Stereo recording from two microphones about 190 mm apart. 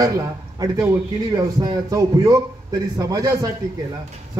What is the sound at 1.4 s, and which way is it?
A man's voice, 20° right (ahead or behind).